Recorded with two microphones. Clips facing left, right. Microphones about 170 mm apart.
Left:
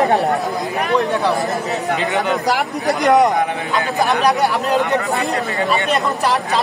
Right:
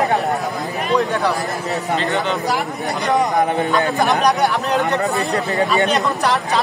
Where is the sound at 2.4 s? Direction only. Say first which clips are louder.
Left 3 dB; 75° left (ahead or behind).